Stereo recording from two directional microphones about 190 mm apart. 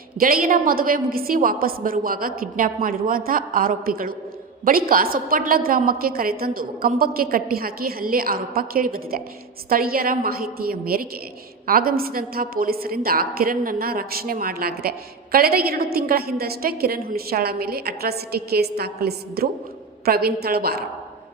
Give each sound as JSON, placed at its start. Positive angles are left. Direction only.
{"t": 0.2, "sound": "a woman's voice", "side_deg": -50}